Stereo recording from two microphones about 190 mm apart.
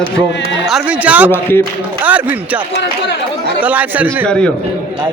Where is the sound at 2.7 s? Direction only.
65° left (ahead or behind).